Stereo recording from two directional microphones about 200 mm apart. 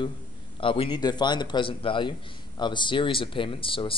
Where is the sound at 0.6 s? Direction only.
25° left (ahead or behind).